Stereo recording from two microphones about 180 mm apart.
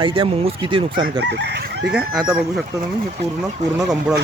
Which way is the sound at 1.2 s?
70° right (ahead or behind).